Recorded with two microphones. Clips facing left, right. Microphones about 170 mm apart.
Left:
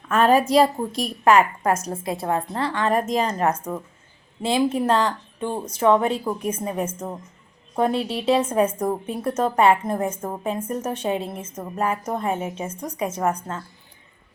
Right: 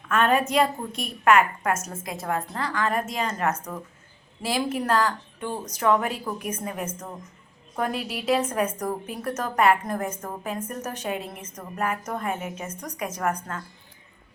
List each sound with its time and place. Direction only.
0.1 s a woman's voice: 35° left (ahead or behind)